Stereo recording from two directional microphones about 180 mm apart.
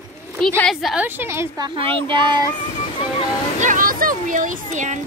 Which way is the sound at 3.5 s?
45° right (ahead or behind).